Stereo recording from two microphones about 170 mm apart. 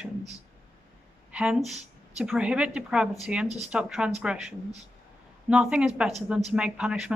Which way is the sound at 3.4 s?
40° right (ahead or behind).